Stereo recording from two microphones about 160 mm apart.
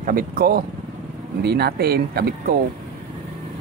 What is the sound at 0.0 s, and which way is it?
Speech, 60° right (ahead or behind).